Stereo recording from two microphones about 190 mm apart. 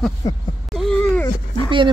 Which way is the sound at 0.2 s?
20° left (ahead or behind).